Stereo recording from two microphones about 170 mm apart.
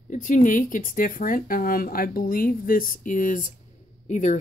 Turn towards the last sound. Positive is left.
turn(degrees=45)  # may be behind; listen again after turning